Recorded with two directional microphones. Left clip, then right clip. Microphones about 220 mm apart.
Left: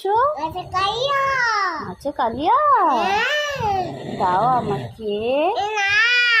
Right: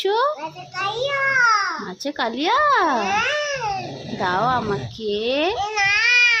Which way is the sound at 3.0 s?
5° right (ahead or behind).